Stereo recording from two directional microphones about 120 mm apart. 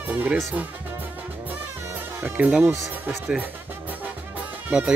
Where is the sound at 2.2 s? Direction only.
10° right (ahead or behind).